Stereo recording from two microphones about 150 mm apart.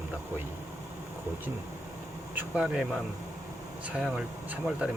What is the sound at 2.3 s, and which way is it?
Speech, 5° right (ahead or behind).